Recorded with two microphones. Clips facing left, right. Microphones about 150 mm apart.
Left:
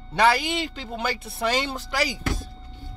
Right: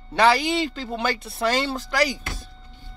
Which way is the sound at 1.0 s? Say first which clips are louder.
Right 2 dB; 10° left (ahead or behind).